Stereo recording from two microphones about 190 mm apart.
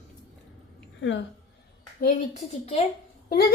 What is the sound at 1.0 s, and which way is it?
Speech, 70° left (ahead or behind).